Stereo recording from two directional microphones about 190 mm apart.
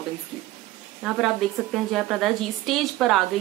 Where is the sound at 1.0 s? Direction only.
Centre (ahead or behind).